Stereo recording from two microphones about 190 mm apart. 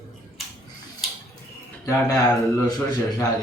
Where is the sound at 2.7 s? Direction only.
20° left (ahead or behind).